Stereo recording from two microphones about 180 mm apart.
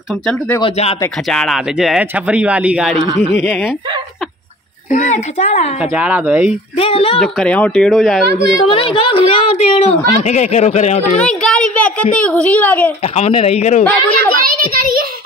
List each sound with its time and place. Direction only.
0.6 s a woman's voice: 35° left (ahead or behind)
1.3 s speech: centre (ahead or behind)
4.9 s a woman's voice: 40° left (ahead or behind)
5.8 s speech: 10° right (ahead or behind)
6.8 s a woman's voice: 30° left (ahead or behind)
7.2 s speech: 5° left (ahead or behind)
8.3 s a woman's voice: 65° right (ahead or behind)
8.6 s a woman's voice: 30° left (ahead or behind)
11.1 s a child's voice: 5° left (ahead or behind)
13.0 s a woman's voice: 35° left (ahead or behind)
14.4 s a child's voice: 55° right (ahead or behind)